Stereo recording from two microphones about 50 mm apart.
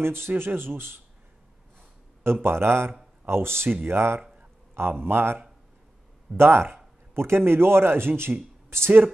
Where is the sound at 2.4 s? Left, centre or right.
Right.